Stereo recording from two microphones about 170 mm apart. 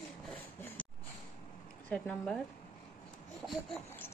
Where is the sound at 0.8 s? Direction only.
5° left (ahead or behind).